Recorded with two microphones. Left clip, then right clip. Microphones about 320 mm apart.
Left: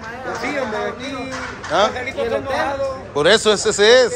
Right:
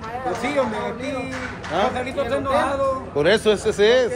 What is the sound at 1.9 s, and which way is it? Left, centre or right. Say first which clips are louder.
Speech: left 2 dB; right.